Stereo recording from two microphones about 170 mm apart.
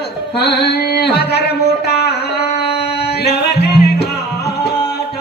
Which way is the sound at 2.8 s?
70° left (ahead or behind).